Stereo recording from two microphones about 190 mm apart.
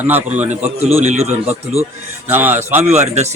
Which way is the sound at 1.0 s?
35° right (ahead or behind).